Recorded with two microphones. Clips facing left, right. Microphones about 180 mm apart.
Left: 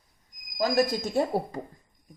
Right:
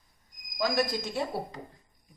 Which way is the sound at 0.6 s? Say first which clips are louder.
Left 4 dB; 45° left (ahead or behind).